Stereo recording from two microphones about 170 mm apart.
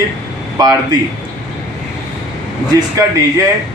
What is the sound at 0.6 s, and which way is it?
Speech, 25° right (ahead or behind).